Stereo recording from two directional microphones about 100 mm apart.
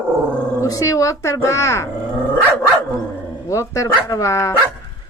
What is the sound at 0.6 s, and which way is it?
A child's voice, 35° left (ahead or behind).